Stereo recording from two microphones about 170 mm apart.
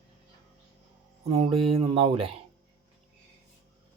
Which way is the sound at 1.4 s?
35° right (ahead or behind).